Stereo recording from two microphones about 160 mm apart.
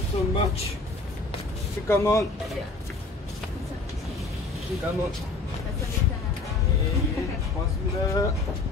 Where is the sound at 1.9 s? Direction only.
20° left (ahead or behind).